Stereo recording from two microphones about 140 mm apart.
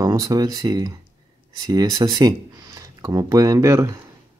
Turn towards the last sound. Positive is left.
turn(degrees=-20)  # may be behind; listen again after turning